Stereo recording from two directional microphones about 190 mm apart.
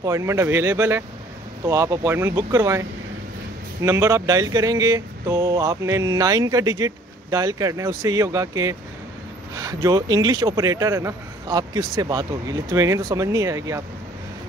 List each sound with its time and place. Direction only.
0.0 s speech: 15° right (ahead or behind)